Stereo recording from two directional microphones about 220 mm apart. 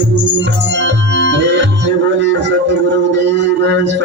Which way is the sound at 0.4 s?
55° right (ahead or behind).